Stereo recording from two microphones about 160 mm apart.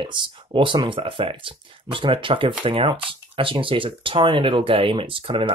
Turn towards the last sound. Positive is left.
turn(degrees=-35)  # may be behind; listen again after turning